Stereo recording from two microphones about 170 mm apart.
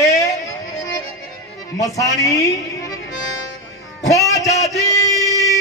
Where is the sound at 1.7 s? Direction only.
20° left (ahead or behind).